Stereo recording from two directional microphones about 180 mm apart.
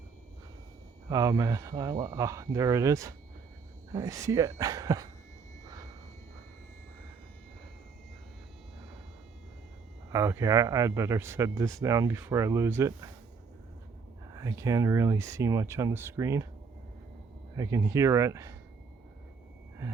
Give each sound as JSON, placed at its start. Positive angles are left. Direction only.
{"t": 1.1, "sound": "speech", "side_deg": -20}
{"t": 5.6, "sound": "vehicle", "side_deg": -20}
{"t": 10.1, "sound": "speech", "side_deg": -15}
{"t": 14.3, "sound": "speech", "side_deg": -20}
{"t": 17.6, "sound": "speech", "side_deg": -20}